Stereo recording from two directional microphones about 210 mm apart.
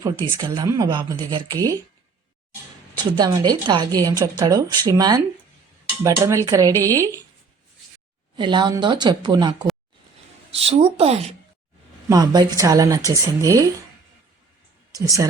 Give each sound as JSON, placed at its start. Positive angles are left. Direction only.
{"t": 0.0, "sound": "a woman's voice", "side_deg": -20}
{"t": 2.9, "sound": "a woman's voice", "side_deg": -20}
{"t": 6.7, "sound": "a woman's voice", "side_deg": 10}
{"t": 8.4, "sound": "a woman's voice", "side_deg": -20}
{"t": 12.0, "sound": "a woman's voice", "side_deg": -20}
{"t": 14.9, "sound": "a woman's voice", "side_deg": -15}